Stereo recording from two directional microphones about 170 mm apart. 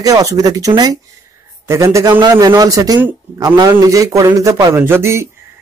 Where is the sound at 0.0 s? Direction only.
20° right (ahead or behind).